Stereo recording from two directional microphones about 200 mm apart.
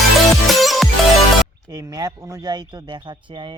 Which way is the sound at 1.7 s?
15° right (ahead or behind).